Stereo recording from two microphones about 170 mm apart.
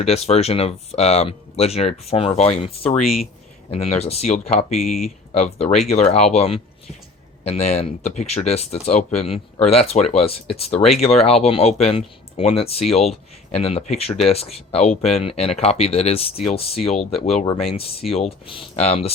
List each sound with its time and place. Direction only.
0.0 s speech: 40° left (ahead or behind)
4.9 s speech: centre (ahead or behind)
5.5 s speech: 40° left (ahead or behind)